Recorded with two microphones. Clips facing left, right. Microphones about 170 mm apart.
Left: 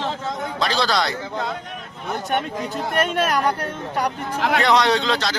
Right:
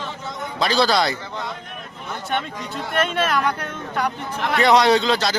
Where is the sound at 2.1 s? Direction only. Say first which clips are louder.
Left 3 dB; 45° left (ahead or behind).